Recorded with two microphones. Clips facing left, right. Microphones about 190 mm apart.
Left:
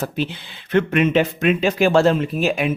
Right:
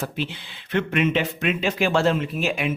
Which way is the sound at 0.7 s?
45° left (ahead or behind).